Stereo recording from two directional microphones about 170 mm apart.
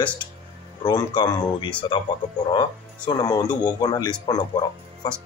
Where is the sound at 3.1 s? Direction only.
25° left (ahead or behind).